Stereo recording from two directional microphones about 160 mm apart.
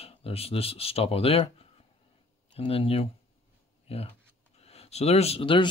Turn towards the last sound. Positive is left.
turn(degrees=30)  # may be behind; listen again after turning